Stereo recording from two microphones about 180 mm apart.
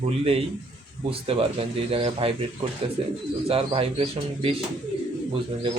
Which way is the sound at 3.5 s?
30° right (ahead or behind).